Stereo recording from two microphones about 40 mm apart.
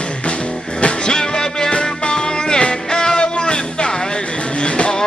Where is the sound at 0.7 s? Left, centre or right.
Left.